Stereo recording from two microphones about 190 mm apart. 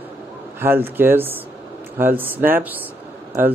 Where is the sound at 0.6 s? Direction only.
10° right (ahead or behind).